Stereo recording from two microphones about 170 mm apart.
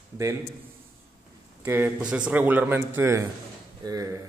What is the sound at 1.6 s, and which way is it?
A man's voice, 15° right (ahead or behind).